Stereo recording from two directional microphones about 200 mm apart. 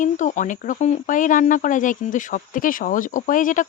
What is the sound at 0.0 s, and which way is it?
Speech, 40° left (ahead or behind).